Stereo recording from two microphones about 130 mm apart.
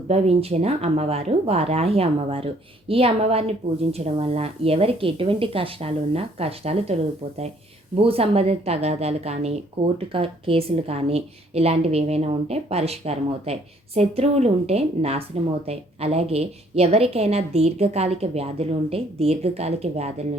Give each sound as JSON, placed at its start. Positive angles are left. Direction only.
{"t": 0.1, "sound": "a woman's voice", "side_deg": -50}